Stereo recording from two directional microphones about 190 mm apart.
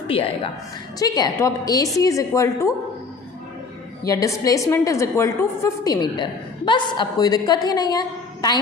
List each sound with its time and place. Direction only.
0.1 s a woman's voice: 30° left (ahead or behind)
4.0 s a woman's voice: 15° left (ahead or behind)